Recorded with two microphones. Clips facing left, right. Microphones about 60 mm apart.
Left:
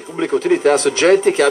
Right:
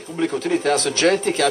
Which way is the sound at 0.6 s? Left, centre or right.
Left.